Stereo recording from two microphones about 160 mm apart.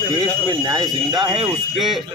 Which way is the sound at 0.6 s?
25° right (ahead or behind).